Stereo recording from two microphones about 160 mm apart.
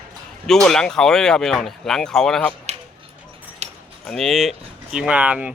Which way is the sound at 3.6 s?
45° right (ahead or behind).